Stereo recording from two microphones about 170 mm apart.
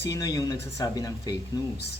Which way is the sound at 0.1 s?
20° left (ahead or behind).